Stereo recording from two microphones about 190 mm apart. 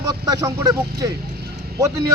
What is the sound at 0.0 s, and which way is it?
A man's voice, 20° right (ahead or behind).